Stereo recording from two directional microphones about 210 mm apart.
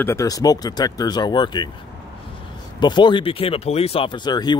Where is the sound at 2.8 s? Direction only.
20° left (ahead or behind).